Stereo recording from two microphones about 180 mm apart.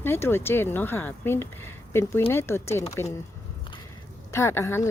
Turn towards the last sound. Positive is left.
turn(degrees=15)  # may be behind; listen again after turning